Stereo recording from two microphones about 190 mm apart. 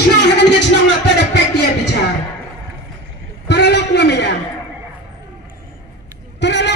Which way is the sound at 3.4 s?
60° left (ahead or behind).